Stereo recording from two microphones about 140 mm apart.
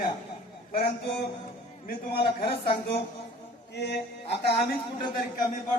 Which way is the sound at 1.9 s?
90° left.